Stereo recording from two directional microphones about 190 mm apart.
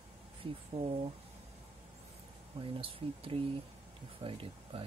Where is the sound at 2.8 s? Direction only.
30° right (ahead or behind).